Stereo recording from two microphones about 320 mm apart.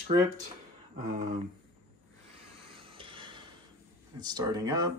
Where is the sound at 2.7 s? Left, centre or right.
Centre.